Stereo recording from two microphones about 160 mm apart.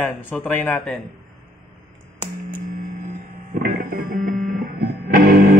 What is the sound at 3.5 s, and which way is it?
Music, 65° right (ahead or behind).